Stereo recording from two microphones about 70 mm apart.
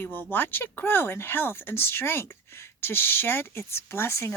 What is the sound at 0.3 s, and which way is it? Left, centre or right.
Speech, left.